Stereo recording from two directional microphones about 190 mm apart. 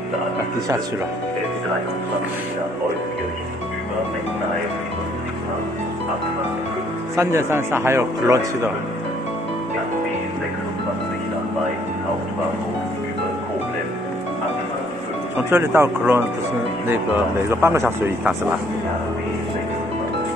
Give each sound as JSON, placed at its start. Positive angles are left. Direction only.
{"t": 7.2, "sound": "speech", "side_deg": -15}
{"t": 15.5, "sound": "speech", "side_deg": -15}